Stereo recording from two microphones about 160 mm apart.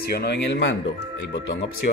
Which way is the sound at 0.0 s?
85° left.